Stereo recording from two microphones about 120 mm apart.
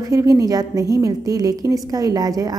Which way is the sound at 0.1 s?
30° right (ahead or behind).